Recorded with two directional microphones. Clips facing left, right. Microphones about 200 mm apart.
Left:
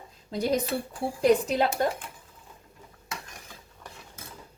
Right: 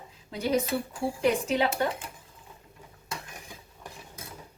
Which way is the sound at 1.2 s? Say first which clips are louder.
Left 4 dB; 40° left (ahead or behind).